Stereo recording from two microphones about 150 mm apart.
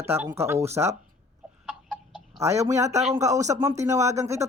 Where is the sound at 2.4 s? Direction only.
20° right (ahead or behind).